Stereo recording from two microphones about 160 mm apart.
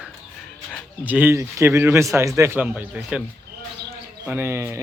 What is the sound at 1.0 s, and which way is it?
Speech, 10° right (ahead or behind).